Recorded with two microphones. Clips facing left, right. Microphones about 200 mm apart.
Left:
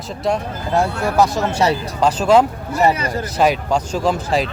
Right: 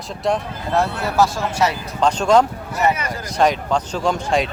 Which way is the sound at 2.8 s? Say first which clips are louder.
Left 3 dB; 35° left (ahead or behind).